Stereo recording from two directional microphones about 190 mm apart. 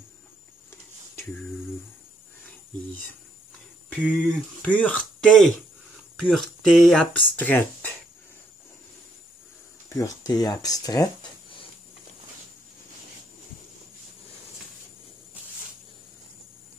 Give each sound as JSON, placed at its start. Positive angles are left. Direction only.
{"t": 3.9, "sound": "speech", "side_deg": 5}
{"t": 9.9, "sound": "speech", "side_deg": 20}